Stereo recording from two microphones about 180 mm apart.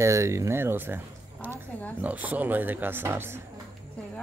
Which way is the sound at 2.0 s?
10° right (ahead or behind).